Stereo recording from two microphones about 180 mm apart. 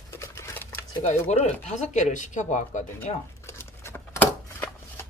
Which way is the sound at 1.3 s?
40° left (ahead or behind).